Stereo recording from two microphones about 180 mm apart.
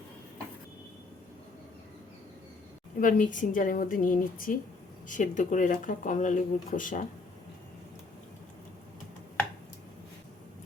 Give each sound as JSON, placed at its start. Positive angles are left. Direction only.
{"t": 3.0, "sound": "speech", "side_deg": 45}